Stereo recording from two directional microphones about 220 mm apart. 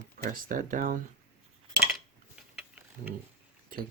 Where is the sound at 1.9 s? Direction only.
Centre (ahead or behind).